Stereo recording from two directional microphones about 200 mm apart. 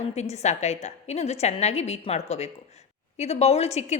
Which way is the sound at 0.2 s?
35° left (ahead or behind).